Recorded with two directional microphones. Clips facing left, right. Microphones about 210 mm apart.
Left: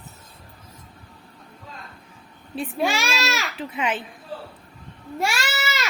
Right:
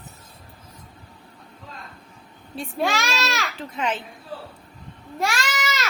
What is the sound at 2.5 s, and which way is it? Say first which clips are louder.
Speech: left 1 dB; 5° left (ahead or behind).